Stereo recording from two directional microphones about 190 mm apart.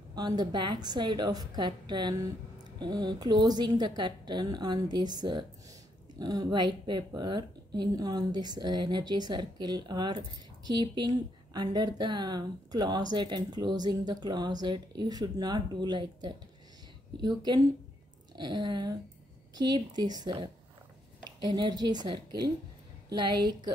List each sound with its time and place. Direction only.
0.1 s speech: 20° right (ahead or behind)